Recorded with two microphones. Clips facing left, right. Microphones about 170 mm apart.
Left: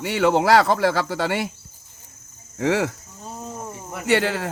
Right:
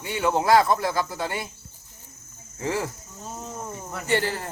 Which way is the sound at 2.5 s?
85° left.